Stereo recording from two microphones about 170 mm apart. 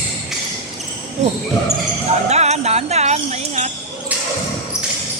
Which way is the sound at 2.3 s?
40° right (ahead or behind).